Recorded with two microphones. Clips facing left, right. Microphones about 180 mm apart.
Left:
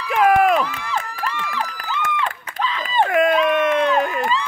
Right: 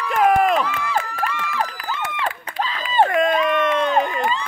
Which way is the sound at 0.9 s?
50° right (ahead or behind).